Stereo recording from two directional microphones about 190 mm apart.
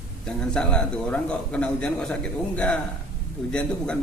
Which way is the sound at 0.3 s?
5° left (ahead or behind).